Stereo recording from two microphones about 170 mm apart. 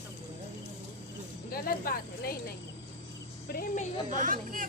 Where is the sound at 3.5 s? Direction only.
60° left (ahead or behind).